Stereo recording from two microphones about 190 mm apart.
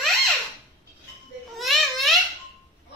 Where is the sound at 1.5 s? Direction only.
Centre (ahead or behind).